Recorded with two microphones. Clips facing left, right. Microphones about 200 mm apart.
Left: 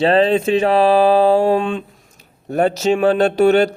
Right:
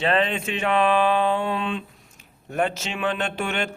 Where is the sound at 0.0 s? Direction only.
35° left (ahead or behind).